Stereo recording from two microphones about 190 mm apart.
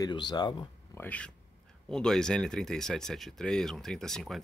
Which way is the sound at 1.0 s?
5° left (ahead or behind).